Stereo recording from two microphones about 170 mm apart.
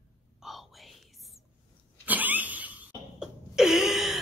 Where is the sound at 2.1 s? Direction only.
10° right (ahead or behind).